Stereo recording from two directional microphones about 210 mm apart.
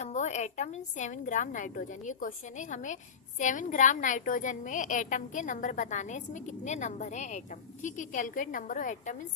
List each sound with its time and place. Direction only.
0.0 s a woman's voice: 35° left (ahead or behind)